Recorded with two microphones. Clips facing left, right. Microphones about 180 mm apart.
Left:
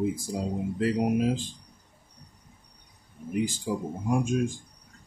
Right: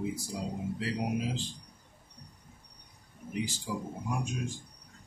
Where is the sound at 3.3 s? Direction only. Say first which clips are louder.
Left 7 dB; 50° left (ahead or behind).